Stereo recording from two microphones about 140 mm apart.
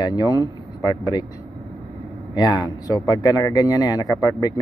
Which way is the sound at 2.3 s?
30° left (ahead or behind).